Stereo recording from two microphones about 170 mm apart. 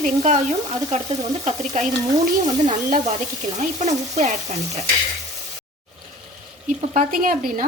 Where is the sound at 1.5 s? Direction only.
45° right (ahead or behind).